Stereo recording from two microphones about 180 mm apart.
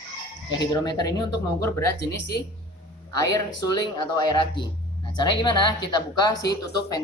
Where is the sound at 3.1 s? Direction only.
20° left (ahead or behind).